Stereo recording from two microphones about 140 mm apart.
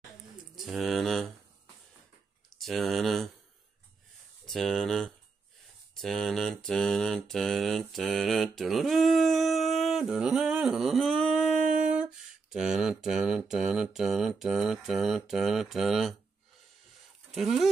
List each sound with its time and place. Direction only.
0.6 s pigeon: centre (ahead or behind)
2.6 s a sound: centre (ahead or behind)
4.5 s mantra: centre (ahead or behind)
11.6 s a sound: 70° right (ahead or behind)
11.9 s mantra: 5° right (ahead or behind)
17.3 s speech: centre (ahead or behind)